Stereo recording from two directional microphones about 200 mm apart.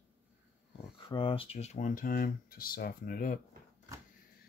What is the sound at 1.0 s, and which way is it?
Speech, 25° left (ahead or behind).